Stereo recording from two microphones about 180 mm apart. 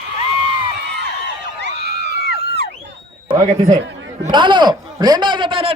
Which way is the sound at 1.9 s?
65° right (ahead or behind).